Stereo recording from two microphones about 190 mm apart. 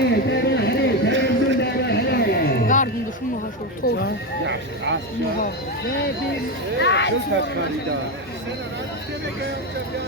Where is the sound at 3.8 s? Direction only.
60° left (ahead or behind).